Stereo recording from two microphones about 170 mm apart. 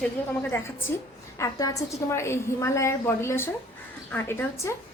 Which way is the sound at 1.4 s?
20° left (ahead or behind).